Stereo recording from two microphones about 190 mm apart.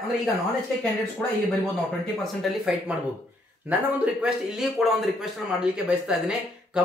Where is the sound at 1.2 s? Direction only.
10° left (ahead or behind).